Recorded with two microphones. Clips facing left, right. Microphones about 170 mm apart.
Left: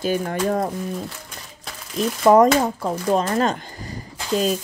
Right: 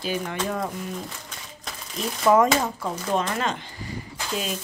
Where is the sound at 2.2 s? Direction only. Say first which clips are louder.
Left 5 dB; 40° left (ahead or behind).